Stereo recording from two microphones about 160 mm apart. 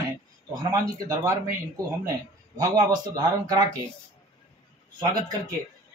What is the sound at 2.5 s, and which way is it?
Speech, 25° right (ahead or behind).